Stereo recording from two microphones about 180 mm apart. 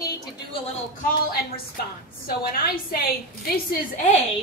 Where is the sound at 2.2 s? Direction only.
55° left (ahead or behind).